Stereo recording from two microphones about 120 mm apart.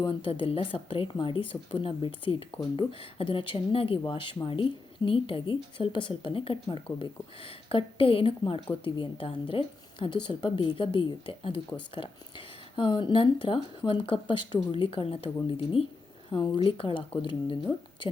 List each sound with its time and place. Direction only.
0.1 s speech: 50° left (ahead or behind)